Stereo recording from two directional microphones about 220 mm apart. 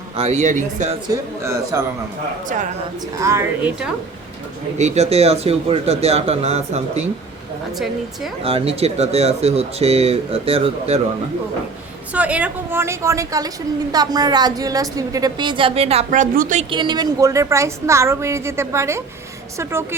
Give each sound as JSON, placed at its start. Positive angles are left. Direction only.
{"t": 0.2, "sound": "speech", "side_deg": -30}
{"t": 1.0, "sound": "a woman's voice", "side_deg": -15}
{"t": 3.2, "sound": "a woman's voice", "side_deg": -15}
{"t": 4.8, "sound": "a woman's voice", "side_deg": -30}
{"t": 8.4, "sound": "a woman's voice", "side_deg": -25}
{"t": 12.1, "sound": "a woman's voice", "side_deg": -5}
{"t": 16.6, "sound": "a woman's voice", "side_deg": -20}